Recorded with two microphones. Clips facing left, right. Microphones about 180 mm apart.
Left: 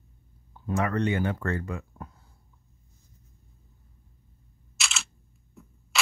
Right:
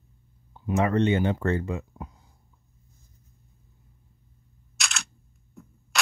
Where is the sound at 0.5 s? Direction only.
20° right (ahead or behind).